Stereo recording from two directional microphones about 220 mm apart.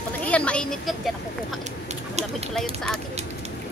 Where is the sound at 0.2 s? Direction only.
5° left (ahead or behind).